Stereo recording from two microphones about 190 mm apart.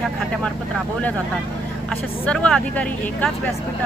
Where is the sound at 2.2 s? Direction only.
5° left (ahead or behind).